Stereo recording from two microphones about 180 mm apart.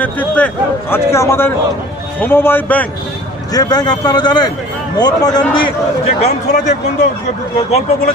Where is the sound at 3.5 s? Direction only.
20° left (ahead or behind).